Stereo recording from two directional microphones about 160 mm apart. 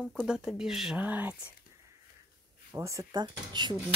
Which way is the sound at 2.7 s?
20° right (ahead or behind).